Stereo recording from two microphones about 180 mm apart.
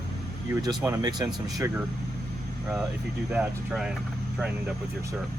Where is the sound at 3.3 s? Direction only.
5° right (ahead or behind).